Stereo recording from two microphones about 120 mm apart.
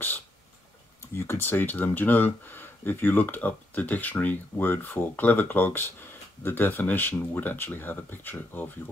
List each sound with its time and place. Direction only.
1.1 s speech: 20° left (ahead or behind)